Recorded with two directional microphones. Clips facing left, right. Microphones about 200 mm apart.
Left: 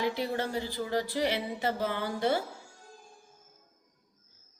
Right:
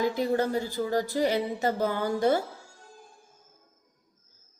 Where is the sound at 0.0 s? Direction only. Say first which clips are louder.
Right 5 dB; 45° right (ahead or behind).